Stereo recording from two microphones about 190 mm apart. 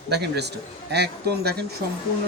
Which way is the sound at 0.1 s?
60° right (ahead or behind).